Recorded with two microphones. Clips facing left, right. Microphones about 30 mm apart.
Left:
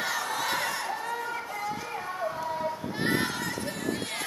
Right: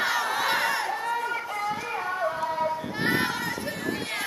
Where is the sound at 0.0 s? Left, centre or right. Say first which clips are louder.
Right 5 dB; right.